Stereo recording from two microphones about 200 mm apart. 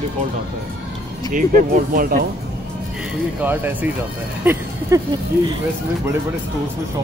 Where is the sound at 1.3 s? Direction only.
40° right (ahead or behind).